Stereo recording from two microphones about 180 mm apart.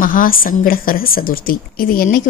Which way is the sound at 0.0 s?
50° left (ahead or behind).